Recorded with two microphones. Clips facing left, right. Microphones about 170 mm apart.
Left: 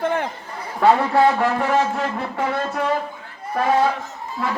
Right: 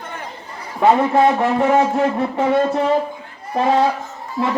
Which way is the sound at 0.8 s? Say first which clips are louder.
Right 2 dB; 20° right (ahead or behind).